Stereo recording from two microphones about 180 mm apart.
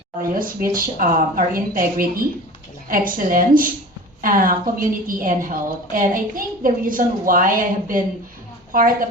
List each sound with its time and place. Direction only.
0.2 s a woman's voice: 50° right (ahead or behind)